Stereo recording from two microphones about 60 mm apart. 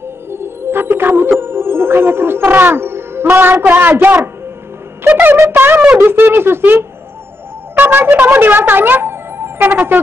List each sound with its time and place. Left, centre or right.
0.3 s music: right
1.4 s speech: right
3.6 s music: right
5.0 s music: right
5.5 s speech: right
9.6 s music: right